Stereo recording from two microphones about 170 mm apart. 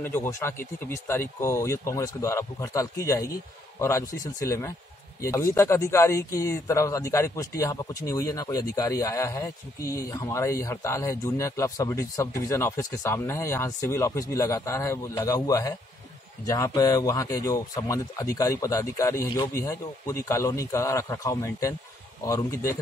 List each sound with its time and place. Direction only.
0.0 s speech: 15° left (ahead or behind)